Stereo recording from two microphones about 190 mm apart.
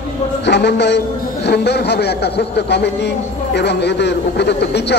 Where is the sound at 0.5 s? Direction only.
65° left (ahead or behind).